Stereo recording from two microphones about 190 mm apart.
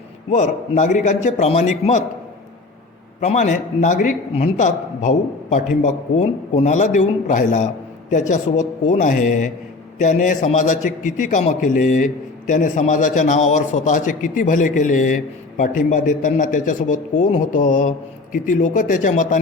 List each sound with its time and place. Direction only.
0.3 s a man's voice: 40° left (ahead or behind)
3.2 s a man's voice: 40° left (ahead or behind)